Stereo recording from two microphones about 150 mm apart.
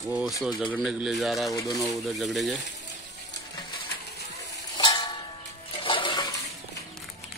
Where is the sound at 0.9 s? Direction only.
5° right (ahead or behind).